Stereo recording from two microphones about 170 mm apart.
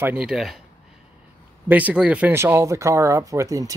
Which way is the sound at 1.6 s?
10° right (ahead or behind).